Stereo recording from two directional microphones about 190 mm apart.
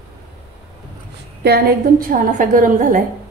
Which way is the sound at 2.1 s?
45° right (ahead or behind).